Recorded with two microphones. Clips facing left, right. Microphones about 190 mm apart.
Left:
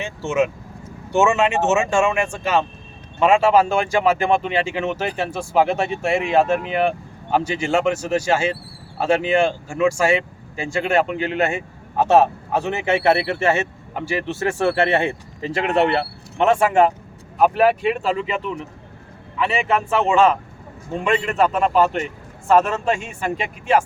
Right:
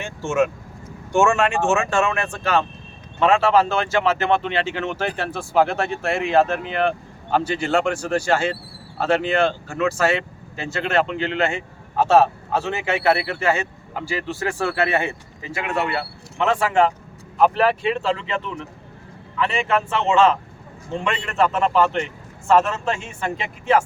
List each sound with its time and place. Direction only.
0.3 s speech: centre (ahead or behind); by 15.1 s 30° left (ahead or behind)
16.4 s speech: 20° left (ahead or behind)